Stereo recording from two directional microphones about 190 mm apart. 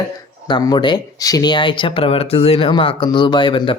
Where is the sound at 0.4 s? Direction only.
20° left (ahead or behind).